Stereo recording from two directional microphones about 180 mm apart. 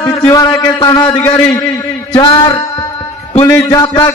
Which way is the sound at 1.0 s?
10° left (ahead or behind).